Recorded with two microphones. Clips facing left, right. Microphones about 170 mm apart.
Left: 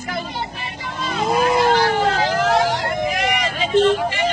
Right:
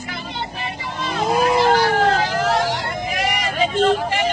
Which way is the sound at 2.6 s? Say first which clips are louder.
Left 3 dB; 55° left (ahead or behind).